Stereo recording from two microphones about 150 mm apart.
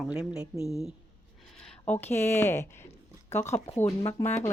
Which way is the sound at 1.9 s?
15° left (ahead or behind).